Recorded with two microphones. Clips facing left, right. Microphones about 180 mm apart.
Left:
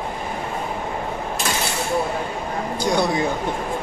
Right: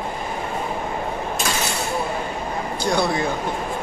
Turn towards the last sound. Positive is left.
turn(degrees=20)  # may be behind; listen again after turning